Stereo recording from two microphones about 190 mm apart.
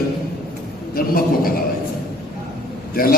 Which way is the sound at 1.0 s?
50° left (ahead or behind).